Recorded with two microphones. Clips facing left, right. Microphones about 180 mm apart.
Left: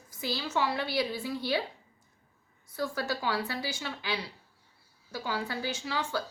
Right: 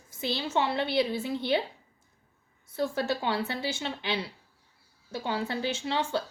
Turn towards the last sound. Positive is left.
turn(degrees=-25)  # may be behind; listen again after turning